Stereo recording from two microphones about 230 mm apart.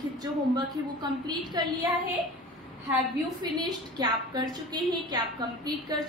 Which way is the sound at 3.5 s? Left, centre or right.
Centre.